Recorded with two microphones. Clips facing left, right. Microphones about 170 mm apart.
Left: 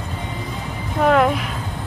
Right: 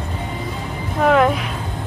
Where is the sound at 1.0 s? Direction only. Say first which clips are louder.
Right 1 dB; centre (ahead or behind).